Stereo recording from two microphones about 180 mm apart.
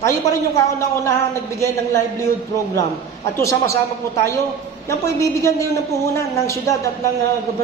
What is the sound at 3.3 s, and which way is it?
Speech, 15° left (ahead or behind).